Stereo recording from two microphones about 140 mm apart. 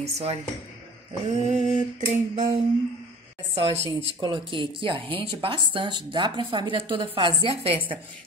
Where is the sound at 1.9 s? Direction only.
60° right (ahead or behind).